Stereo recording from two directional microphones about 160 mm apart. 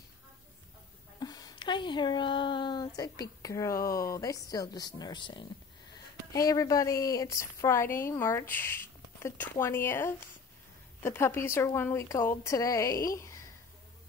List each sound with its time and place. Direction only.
1.2 s a woman's voice: 25° left (ahead or behind)